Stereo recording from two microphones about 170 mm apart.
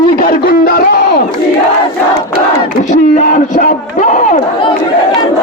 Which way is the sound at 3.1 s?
45° left (ahead or behind).